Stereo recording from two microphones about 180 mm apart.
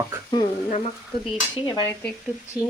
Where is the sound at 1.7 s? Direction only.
25° left (ahead or behind).